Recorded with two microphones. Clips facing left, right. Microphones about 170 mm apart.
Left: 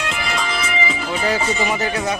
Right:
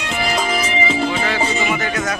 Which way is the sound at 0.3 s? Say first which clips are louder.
Right 3 dB; 35° right (ahead or behind).